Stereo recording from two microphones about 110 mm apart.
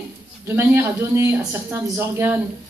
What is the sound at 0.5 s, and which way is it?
Speech, 20° right (ahead or behind).